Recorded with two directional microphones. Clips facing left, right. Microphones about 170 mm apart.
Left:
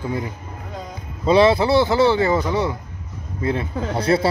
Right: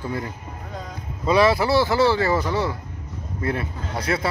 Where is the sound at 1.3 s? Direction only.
25° left (ahead or behind).